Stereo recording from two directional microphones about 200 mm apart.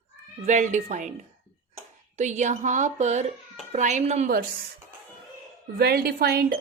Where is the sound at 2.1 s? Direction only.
35° right (ahead or behind).